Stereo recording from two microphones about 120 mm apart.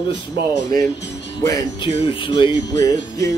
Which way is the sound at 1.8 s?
45° left (ahead or behind).